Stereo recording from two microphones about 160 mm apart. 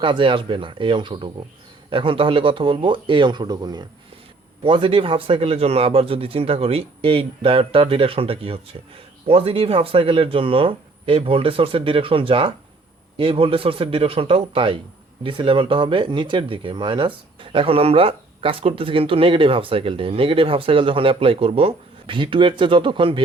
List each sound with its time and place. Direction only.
0.0 s speech: 30° right (ahead or behind)